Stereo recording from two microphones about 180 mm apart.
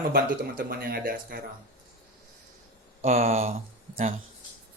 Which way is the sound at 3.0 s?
35° right (ahead or behind).